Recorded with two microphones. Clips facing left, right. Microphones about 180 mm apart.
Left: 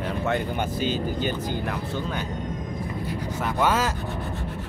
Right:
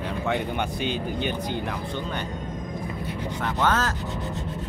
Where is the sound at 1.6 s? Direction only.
5° left (ahead or behind).